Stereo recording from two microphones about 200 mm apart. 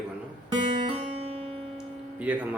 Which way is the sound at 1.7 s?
5° right (ahead or behind).